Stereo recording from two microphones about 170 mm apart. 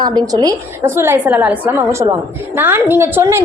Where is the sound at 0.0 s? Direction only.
25° right (ahead or behind).